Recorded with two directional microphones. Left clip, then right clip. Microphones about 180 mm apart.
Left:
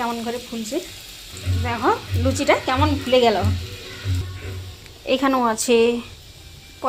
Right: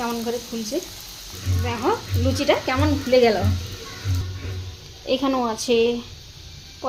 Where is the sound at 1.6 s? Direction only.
5° left (ahead or behind).